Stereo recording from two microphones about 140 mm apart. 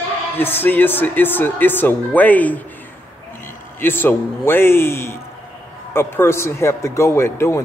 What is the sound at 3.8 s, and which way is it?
A man's voice, 15° left (ahead or behind).